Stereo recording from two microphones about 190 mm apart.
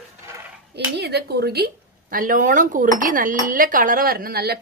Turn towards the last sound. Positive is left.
turn(degrees=-55)  # may be behind; listen again after turning